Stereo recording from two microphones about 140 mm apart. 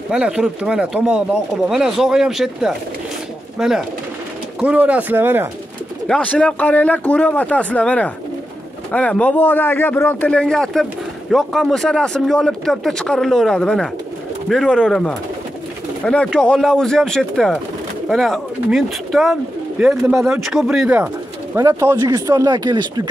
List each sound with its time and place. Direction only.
0.1 s speech: 5° right (ahead or behind)
6.0 s speech: 10° left (ahead or behind); by 21.1 s 10° right (ahead or behind)
21.5 s speech: 20° right (ahead or behind)